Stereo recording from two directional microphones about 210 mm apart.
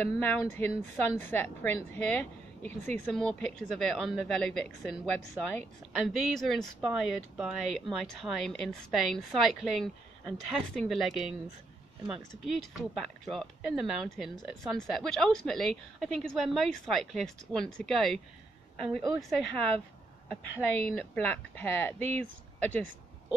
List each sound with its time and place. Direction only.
0.0 s a woman's voice: 10° left (ahead or behind)
6.0 s speech: centre (ahead or behind)
12.4 s speech: centre (ahead or behind)
18.8 s a woman's voice: 20° right (ahead or behind)
19.2 s a woman's voice: 5° left (ahead or behind)